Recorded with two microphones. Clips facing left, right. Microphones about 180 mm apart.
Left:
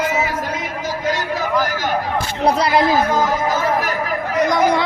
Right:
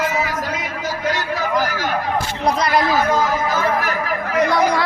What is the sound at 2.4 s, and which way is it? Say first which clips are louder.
Speech: left 3 dB; 30° left (ahead or behind).